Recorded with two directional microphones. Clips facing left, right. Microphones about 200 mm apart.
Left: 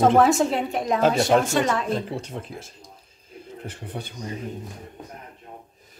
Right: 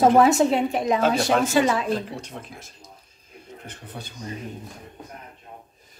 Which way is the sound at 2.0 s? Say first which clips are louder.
Left 4 dB; 25° left (ahead or behind).